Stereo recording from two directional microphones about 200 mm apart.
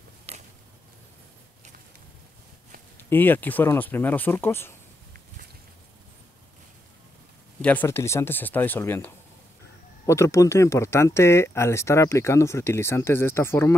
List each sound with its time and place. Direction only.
0.3 s a sound: 30° right (ahead or behind)
3.1 s speech: 10° left (ahead or behind)
7.6 s speech: 10° left (ahead or behind)